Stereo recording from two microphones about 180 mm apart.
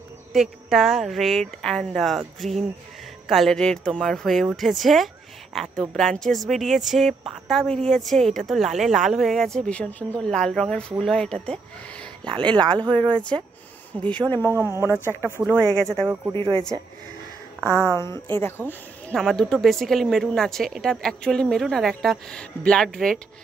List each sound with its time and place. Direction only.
0.3 s a woman's voice: centre (ahead or behind)
12.3 s speech: 25° right (ahead or behind)
14.5 s speech: 15° right (ahead or behind)
15.7 s a woman's voice: 5° left (ahead or behind)
16.3 s speech: 30° right (ahead or behind)
17.6 s a woman's voice: 15° left (ahead or behind)